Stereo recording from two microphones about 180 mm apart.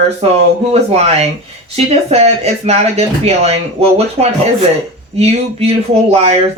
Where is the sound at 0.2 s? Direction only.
35° right (ahead or behind).